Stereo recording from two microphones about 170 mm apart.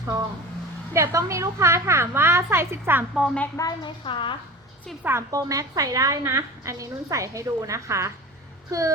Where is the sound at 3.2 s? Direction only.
Centre (ahead or behind).